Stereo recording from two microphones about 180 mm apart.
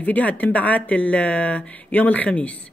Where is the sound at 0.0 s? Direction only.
10° left (ahead or behind).